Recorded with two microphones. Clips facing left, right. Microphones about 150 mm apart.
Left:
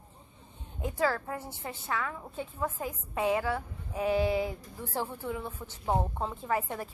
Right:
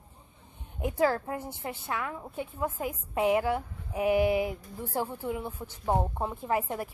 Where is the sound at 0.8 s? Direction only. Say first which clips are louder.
Right 3 dB; 15° right (ahead or behind).